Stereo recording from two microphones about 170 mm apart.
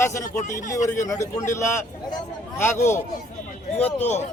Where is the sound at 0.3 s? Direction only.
50° left (ahead or behind).